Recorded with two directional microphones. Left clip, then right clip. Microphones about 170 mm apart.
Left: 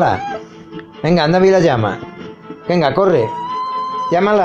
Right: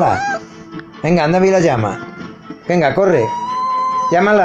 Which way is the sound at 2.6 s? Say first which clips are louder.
Even; 15° left (ahead or behind).